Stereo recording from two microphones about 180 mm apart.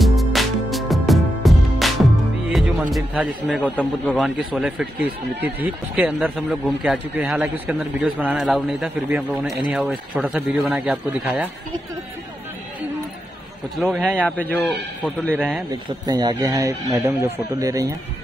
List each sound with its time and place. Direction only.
0.0 s music: centre (ahead or behind)
2.5 s a man's voice: 5° right (ahead or behind)
4.6 s speech: 5° right (ahead or behind)
13.7 s a man's voice: centre (ahead or behind)
15.3 s speech: 10° right (ahead or behind)
15.7 s speech: 20° right (ahead or behind)